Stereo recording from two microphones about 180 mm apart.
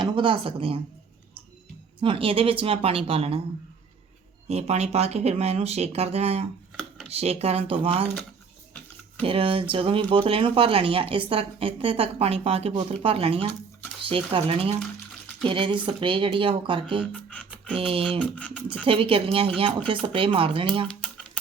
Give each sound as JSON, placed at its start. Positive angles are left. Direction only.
{"t": 0.0, "sound": "speech", "side_deg": -30}
{"t": 2.0, "sound": "speech", "side_deg": -30}
{"t": 4.4, "sound": "speech", "side_deg": -35}
{"t": 9.2, "sound": "speech", "side_deg": -30}
{"t": 17.1, "sound": "music", "side_deg": 0}
{"t": 17.7, "sound": "speech", "side_deg": -30}
{"t": 18.2, "sound": "beatboxing", "side_deg": 5}
{"t": 18.9, "sound": "speech", "side_deg": -30}
{"t": 20.8, "sound": "typewriter", "side_deg": 5}